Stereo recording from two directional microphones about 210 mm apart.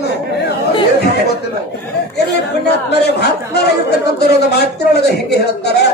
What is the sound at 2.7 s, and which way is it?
A man's voice, 50° left (ahead or behind).